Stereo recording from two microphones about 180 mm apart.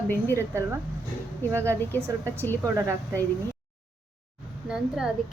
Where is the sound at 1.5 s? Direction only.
15° right (ahead or behind).